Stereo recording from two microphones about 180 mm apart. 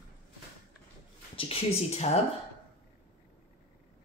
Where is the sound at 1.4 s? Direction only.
35° left (ahead or behind).